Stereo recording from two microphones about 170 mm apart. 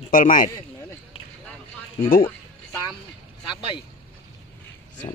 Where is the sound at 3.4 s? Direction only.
30° left (ahead or behind).